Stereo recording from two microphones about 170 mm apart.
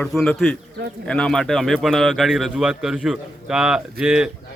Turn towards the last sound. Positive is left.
turn(degrees=-5)  # may be behind; listen again after turning